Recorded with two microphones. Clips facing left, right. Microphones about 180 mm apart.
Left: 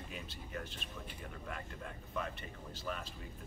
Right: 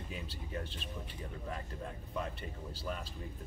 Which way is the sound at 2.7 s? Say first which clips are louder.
Even; 35° right (ahead or behind).